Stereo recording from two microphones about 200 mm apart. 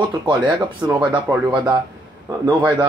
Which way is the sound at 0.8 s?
10° right (ahead or behind).